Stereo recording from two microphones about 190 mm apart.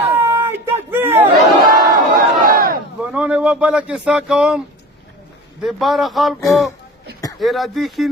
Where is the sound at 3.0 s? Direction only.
5° right (ahead or behind).